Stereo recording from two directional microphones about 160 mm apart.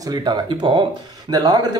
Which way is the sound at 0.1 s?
25° right (ahead or behind).